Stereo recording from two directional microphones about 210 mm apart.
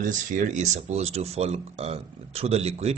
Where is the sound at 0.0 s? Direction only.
35° right (ahead or behind).